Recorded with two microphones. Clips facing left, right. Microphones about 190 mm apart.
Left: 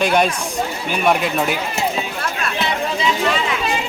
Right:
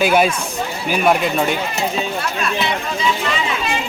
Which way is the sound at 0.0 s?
5° right (ahead or behind).